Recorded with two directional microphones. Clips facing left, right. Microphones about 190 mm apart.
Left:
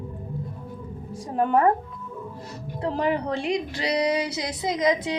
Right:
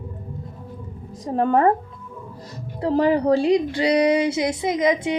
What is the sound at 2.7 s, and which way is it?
A woman's voice, 30° right (ahead or behind).